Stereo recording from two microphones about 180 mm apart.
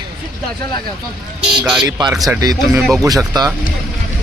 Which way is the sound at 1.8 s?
20° right (ahead or behind).